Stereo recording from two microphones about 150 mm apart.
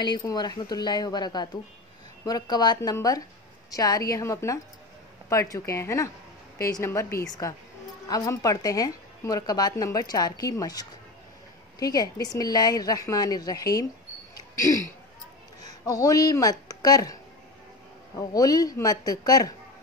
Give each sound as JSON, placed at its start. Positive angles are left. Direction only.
{"t": 0.0, "sound": "a woman's voice", "side_deg": 25}
{"t": 14.3, "sound": "a sound", "side_deg": 20}
{"t": 15.8, "sound": "a woman's voice", "side_deg": 20}